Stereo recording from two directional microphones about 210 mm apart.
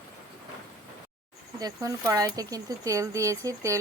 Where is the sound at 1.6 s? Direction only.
15° right (ahead or behind).